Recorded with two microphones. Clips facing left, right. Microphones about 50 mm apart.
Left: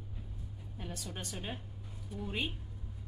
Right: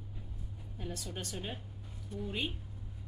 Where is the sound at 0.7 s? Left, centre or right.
Centre.